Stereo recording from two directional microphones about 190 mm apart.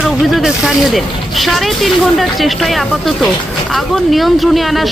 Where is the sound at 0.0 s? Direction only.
Centre (ahead or behind).